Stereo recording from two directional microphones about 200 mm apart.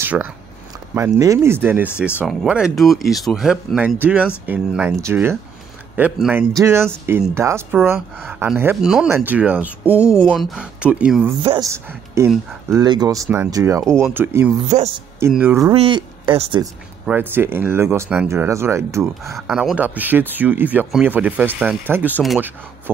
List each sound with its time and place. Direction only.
0.0 s speech: 10° right (ahead or behind)
14.7 s speech: 35° right (ahead or behind)
15.1 s speech: 10° right (ahead or behind)
15.7 s speech: 25° right (ahead or behind)
17.0 s speech: 10° right (ahead or behind)
19.3 s speech: centre (ahead or behind)